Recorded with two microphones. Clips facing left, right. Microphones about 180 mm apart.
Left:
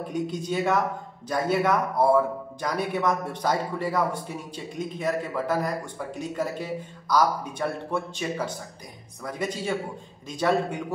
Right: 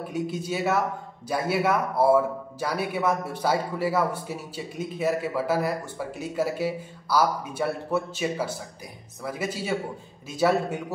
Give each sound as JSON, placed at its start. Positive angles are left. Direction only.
{"t": 0.1, "sound": "a man's voice", "side_deg": -5}